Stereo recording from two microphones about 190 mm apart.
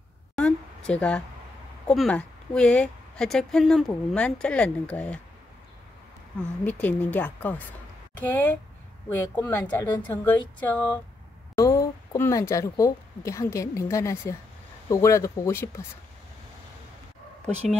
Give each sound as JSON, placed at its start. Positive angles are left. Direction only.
{"t": 0.4, "sound": "a sound", "side_deg": 5}
{"t": 1.9, "sound": "a woman's voice", "side_deg": 5}
{"t": 6.6, "sound": "speech", "side_deg": 10}